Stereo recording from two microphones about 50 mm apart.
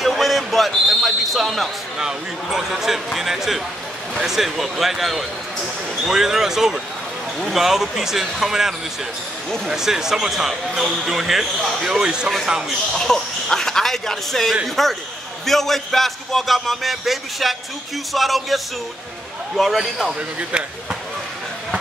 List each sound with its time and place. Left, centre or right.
0.0 s basketball bounce: centre
2.0 s speech: centre
12.9 s speech: centre
20.2 s speech: right